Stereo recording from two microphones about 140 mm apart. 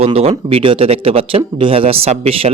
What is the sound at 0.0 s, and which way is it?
Speech, 45° right (ahead or behind).